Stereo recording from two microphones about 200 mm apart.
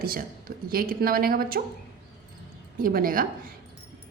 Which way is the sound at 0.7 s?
45° right (ahead or behind).